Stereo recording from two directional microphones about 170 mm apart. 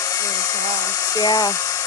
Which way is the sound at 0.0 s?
20° left (ahead or behind).